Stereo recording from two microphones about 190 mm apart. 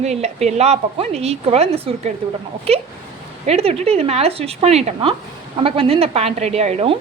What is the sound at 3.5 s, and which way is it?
A woman's voice, 35° right (ahead or behind).